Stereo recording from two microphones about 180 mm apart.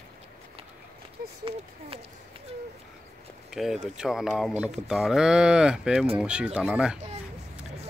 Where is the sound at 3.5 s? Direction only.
Centre (ahead or behind).